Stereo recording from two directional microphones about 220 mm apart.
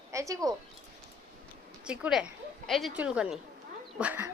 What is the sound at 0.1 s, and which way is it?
Speech, 15° right (ahead or behind).